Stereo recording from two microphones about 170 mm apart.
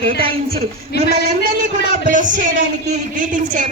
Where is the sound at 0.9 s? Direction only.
75° left (ahead or behind).